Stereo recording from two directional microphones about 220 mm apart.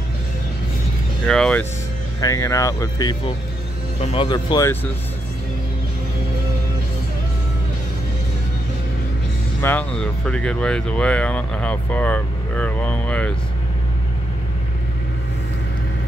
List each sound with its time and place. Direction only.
1.2 s speech: 5° left (ahead or behind)
9.6 s speech: 5° left (ahead or behind)